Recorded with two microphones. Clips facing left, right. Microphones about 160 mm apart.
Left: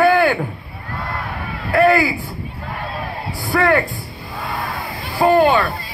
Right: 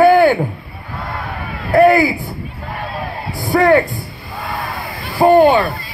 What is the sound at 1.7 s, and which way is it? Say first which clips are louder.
Speech: right 4 dB; 20° right (ahead or behind).